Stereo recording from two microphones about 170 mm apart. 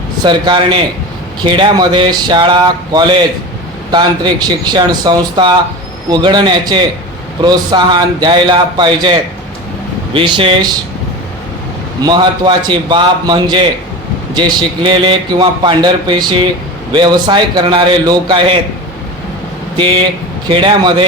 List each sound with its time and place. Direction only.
0.3 s a man's voice: 25° right (ahead or behind)
10.2 s a man's voice: 30° right (ahead or behind)
12.0 s a man's voice: 25° right (ahead or behind)
20.5 s a man's voice: 30° right (ahead or behind)